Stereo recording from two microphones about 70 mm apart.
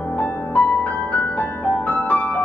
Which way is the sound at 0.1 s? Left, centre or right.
Left.